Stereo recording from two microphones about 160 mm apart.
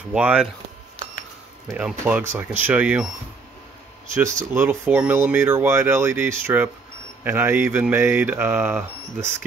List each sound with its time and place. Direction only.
0.1 s speech: 5° right (ahead or behind)
1.9 s speech: 10° right (ahead or behind)
4.5 s speech: 10° right (ahead or behind)